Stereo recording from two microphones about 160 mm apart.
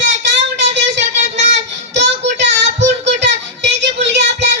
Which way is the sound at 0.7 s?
90° right.